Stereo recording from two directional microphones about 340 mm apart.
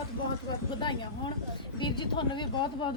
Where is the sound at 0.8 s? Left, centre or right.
Centre.